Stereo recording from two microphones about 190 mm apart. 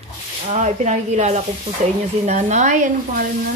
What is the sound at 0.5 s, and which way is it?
Speech, 40° right (ahead or behind).